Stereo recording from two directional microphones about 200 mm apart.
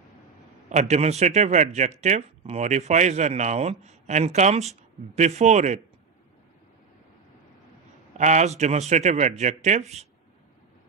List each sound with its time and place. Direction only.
0.7 s speech: 35° right (ahead or behind)
8.2 s speech: 35° right (ahead or behind)